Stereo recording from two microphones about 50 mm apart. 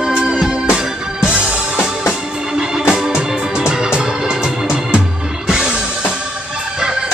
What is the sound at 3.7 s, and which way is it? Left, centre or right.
Organ, centre.